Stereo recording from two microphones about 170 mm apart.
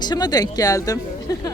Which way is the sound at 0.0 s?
25° left (ahead or behind).